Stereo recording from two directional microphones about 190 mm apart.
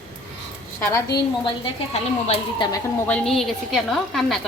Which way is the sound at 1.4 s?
30° left (ahead or behind).